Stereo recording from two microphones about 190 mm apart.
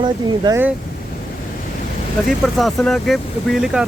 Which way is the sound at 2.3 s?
Centre (ahead or behind).